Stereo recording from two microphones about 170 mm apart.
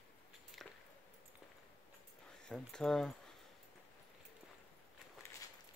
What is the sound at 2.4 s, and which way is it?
Speech, 5° left (ahead or behind).